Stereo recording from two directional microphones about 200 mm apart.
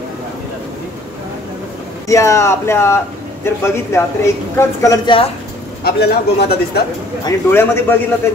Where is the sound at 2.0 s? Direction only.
15° left (ahead or behind).